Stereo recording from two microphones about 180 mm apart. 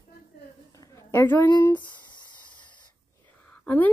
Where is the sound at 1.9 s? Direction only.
25° left (ahead or behind).